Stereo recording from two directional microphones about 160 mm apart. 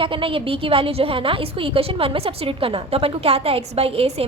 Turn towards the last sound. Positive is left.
turn(degrees=-40)  # may be behind; listen again after turning